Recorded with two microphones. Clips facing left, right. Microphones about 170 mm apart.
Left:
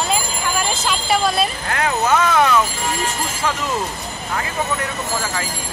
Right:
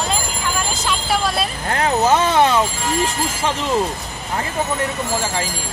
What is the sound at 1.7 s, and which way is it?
Vehicle, 30° right (ahead or behind).